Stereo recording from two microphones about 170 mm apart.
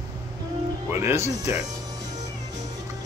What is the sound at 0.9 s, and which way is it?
Speech, 15° right (ahead or behind).